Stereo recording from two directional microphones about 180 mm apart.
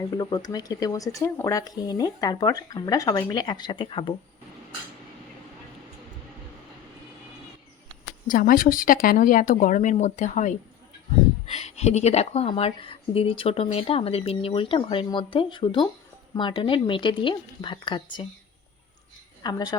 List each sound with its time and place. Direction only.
0.2 s speech: 20° left (ahead or behind)
8.3 s a woman's voice: 50° left (ahead or behind); by 18.3 s 25° left (ahead or behind)
19.4 s a woman's voice: 20° left (ahead or behind)